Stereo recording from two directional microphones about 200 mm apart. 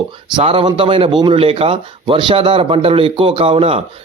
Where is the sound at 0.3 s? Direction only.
25° right (ahead or behind).